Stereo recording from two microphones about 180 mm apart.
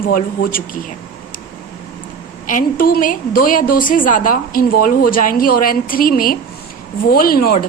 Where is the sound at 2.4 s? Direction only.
50° left (ahead or behind).